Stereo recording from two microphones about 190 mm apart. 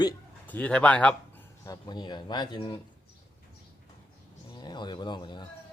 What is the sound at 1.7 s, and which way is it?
Speech, 20° left (ahead or behind).